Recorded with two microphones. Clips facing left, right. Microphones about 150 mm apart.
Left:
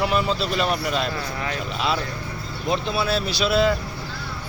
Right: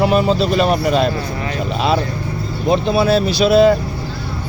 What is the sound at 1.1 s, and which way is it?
Speech, 25° right (ahead or behind).